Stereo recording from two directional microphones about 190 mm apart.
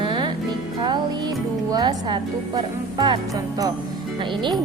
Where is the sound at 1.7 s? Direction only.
20° right (ahead or behind).